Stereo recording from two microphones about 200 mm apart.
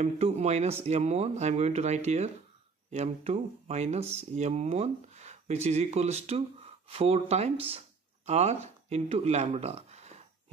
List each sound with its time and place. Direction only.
0.0 s speech: 35° right (ahead or behind)